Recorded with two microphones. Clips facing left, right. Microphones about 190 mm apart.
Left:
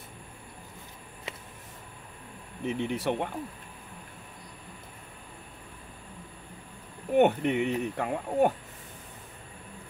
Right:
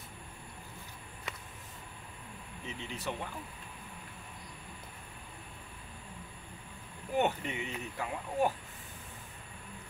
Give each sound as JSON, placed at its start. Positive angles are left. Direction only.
{"t": 2.6, "sound": "speech", "side_deg": 60}
{"t": 7.1, "sound": "speech", "side_deg": 60}